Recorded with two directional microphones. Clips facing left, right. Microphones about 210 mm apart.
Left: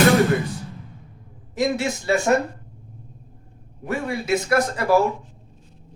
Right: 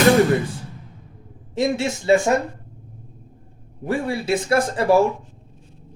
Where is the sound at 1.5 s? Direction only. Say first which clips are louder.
Right 1 dB; 25° right (ahead or behind).